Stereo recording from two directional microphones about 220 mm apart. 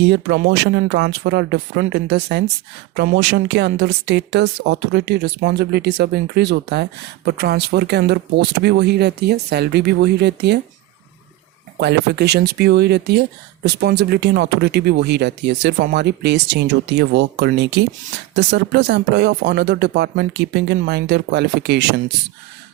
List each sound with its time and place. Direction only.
0.0 s speech: 50° right (ahead or behind)
11.8 s speech: 50° right (ahead or behind)